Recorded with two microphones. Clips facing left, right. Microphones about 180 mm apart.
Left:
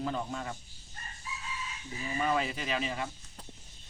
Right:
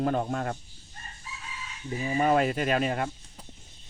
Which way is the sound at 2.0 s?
50° right (ahead or behind).